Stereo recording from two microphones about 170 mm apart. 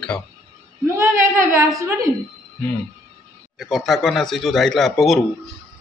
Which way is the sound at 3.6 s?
Centre (ahead or behind).